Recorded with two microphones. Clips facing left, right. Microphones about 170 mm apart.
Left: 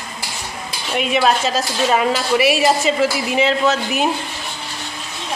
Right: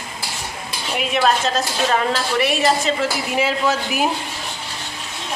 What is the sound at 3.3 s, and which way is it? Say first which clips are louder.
Speech: even; 5° right (ahead or behind).